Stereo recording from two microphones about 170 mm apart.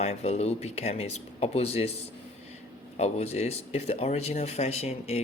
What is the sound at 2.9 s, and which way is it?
Speech, 40° left (ahead or behind).